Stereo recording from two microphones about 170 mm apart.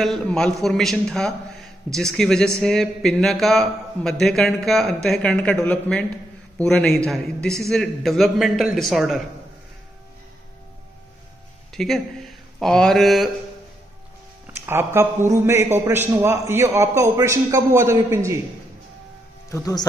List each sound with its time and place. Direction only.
0.0 s a man's voice: 5° left (ahead or behind)
11.7 s speech: centre (ahead or behind)
14.5 s a man's voice: 15° right (ahead or behind)
19.5 s speech: 20° left (ahead or behind)